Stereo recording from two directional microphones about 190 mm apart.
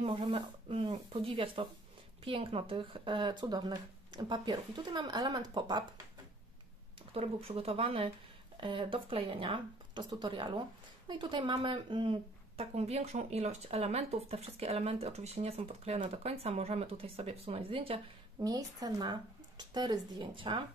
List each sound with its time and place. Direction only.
0.0 s speech: 25° right (ahead or behind)
7.2 s speech: 30° right (ahead or behind)